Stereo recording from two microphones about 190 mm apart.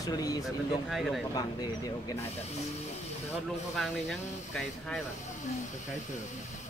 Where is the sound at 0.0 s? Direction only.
20° left (ahead or behind).